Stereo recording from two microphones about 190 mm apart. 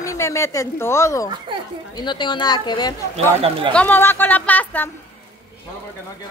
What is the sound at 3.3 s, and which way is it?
Speech, 30° right (ahead or behind).